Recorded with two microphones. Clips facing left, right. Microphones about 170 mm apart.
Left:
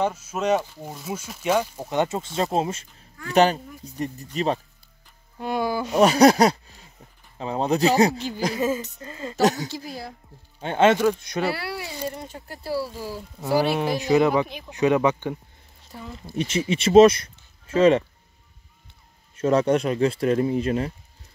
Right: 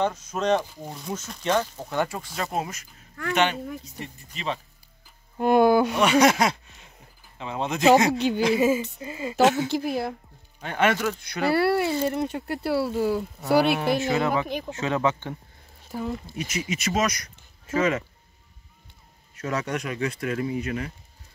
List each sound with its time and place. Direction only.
0.0 s speech: 10° left (ahead or behind); by 2.9 s 25° left (ahead or behind)
3.2 s speech: 65° right (ahead or behind)
4.0 s speech: 40° left (ahead or behind)
5.4 s speech: 55° right (ahead or behind)
5.9 s speech: 35° left (ahead or behind)
8.1 s speech: 70° right (ahead or behind)
8.5 s speech: 10° right (ahead or behind)
9.4 s speech: 40° left (ahead or behind)
9.7 s speech: 60° right (ahead or behind)
10.6 s speech: 25° left (ahead or behind)
11.5 s speech: 55° right (ahead or behind)
13.7 s speech: 20° left (ahead or behind)
16.3 s speech: 30° left (ahead or behind)
19.3 s speech: 30° left (ahead or behind)